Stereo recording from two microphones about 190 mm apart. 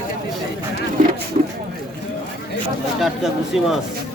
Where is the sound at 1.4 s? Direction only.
35° right (ahead or behind).